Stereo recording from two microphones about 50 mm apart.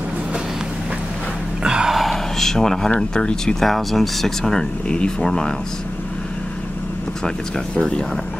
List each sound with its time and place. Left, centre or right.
1.6 s gasp: centre
2.0 s a sound: centre
3.0 s speech: centre
3.6 s speech: centre
7.2 s speech: centre